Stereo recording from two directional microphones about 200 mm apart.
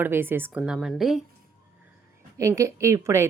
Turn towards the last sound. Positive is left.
turn(degrees=-15)  # may be behind; listen again after turning